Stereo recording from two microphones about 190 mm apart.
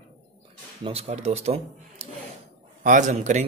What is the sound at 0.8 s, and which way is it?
Speech, 35° right (ahead or behind).